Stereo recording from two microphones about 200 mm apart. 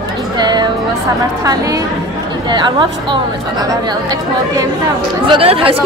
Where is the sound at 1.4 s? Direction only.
15° right (ahead or behind).